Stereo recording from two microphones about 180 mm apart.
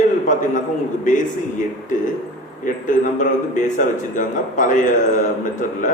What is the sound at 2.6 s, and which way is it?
A man's voice, 45° left (ahead or behind).